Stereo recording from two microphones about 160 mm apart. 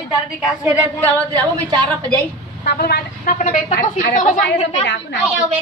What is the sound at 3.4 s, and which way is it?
A woman's voice, 50° left (ahead or behind).